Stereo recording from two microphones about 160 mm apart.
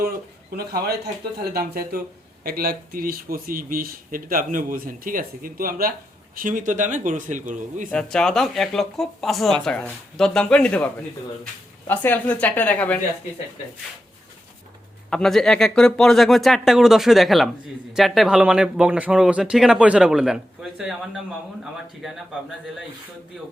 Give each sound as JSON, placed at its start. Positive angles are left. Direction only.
{"t": 0.5, "sound": "speech", "side_deg": -80}
{"t": 7.9, "sound": "a woman's voice", "side_deg": 5}
{"t": 15.1, "sound": "speech", "side_deg": 5}